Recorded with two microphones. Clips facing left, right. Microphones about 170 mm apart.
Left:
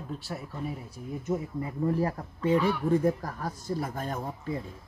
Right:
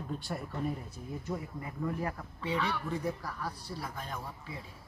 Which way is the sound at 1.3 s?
25° left (ahead or behind).